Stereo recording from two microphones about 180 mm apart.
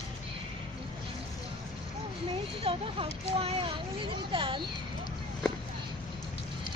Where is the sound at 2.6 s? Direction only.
30° right (ahead or behind).